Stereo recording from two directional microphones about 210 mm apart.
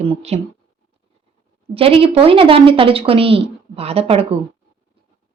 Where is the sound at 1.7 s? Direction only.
25° right (ahead or behind).